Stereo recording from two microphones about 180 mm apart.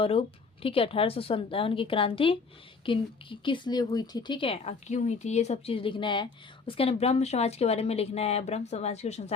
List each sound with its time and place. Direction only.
0.0 s a woman's voice: 30° left (ahead or behind)